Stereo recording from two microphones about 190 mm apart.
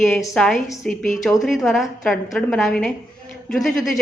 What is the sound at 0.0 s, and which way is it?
A woman's voice, centre (ahead or behind).